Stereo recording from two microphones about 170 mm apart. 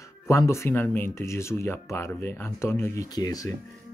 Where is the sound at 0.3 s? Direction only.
15° left (ahead or behind).